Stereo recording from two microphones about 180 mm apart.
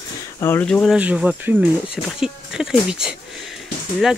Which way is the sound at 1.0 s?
10° right (ahead or behind).